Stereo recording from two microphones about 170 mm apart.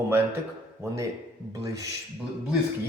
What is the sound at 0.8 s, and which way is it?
Speech, 15° right (ahead or behind).